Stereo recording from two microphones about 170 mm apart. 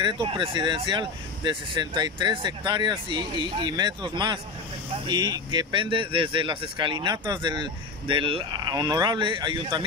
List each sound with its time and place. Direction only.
0.0 s speech: 30° right (ahead or behind)